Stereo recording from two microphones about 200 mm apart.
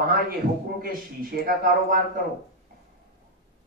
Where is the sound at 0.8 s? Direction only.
45° right (ahead or behind).